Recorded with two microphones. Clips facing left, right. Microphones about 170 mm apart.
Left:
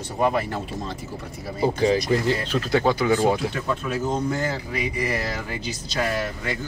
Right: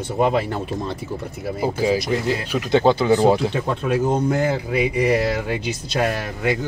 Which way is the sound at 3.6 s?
60° right (ahead or behind).